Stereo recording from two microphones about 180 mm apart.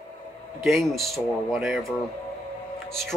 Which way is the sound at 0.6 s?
Centre (ahead or behind).